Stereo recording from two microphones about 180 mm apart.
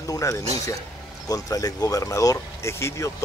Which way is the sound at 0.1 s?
15° left (ahead or behind).